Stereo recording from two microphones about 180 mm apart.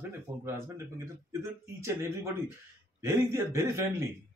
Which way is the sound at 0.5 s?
15° right (ahead or behind).